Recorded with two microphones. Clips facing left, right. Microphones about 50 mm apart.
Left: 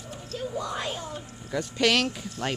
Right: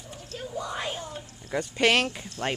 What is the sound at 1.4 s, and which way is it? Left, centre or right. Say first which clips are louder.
A child's voice: right 1 dB; right.